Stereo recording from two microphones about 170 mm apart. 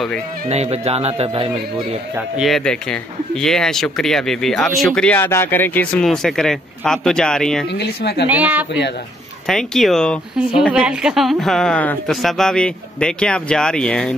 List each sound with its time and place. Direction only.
0.5 s speech: 40° right (ahead or behind)
2.1 s speech: centre (ahead or behind)
7.7 s speech: 85° left
8.3 s speech: 10° right (ahead or behind)
9.5 s speech: centre (ahead or behind)